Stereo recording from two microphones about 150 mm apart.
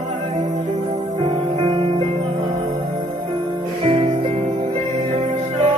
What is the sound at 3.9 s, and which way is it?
Music, 45° right (ahead or behind).